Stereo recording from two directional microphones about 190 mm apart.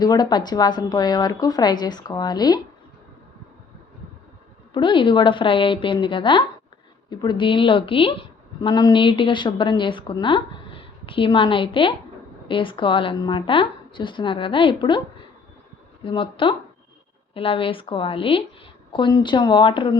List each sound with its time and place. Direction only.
0.0 s a woman's voice: 20° left (ahead or behind)
4.7 s a woman's voice: 25° left (ahead or behind)
16.0 s a woman's voice: 25° left (ahead or behind)